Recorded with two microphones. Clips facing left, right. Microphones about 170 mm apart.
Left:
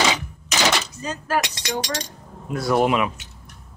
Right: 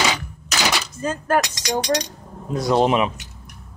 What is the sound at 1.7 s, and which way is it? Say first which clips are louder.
Speech: right 5 dB; 35° right (ahead or behind).